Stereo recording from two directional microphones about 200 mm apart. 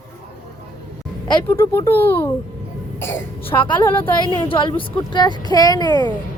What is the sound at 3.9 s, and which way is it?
Speech, 10° left (ahead or behind).